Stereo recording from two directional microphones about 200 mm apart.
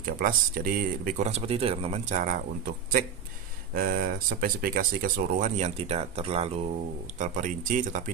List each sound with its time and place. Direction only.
0.0 s speech: 45° right (ahead or behind)
3.7 s speech: 45° right (ahead or behind)